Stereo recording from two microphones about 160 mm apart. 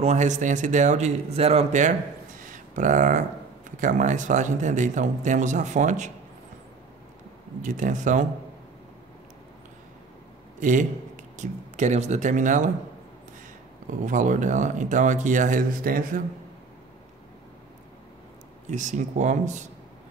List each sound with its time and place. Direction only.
0.0 s speech: 45° right (ahead or behind)
7.6 s speech: 55° right (ahead or behind)
10.6 s speech: 50° right (ahead or behind)
13.8 s speech: 50° right (ahead or behind)
18.7 s speech: 50° right (ahead or behind)